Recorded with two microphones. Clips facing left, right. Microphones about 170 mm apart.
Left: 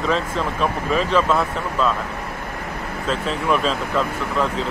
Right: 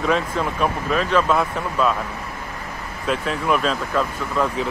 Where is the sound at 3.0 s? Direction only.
10° right (ahead or behind).